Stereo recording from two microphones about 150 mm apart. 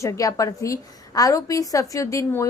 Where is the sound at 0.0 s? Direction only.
20° left (ahead or behind).